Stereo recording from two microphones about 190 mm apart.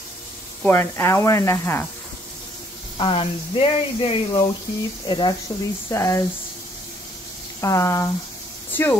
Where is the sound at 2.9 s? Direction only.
30° left (ahead or behind); by 6.2 s 15° left (ahead or behind).